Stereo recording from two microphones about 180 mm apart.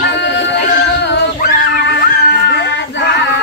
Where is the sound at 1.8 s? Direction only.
70° left (ahead or behind).